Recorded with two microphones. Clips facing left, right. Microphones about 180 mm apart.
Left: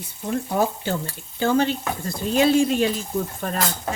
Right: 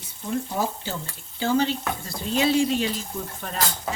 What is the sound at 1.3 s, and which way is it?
Speech, 55° left (ahead or behind).